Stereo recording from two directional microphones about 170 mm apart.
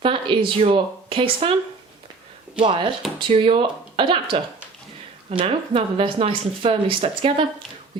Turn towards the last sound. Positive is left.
turn(degrees=-35)  # may be behind; listen again after turning